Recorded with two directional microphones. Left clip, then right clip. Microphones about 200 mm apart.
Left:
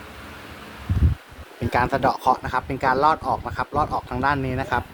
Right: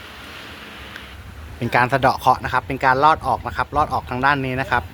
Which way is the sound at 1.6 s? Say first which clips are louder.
Right 4 dB; centre (ahead or behind).